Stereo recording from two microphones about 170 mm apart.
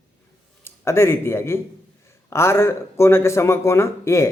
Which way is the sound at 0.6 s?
15° left (ahead or behind).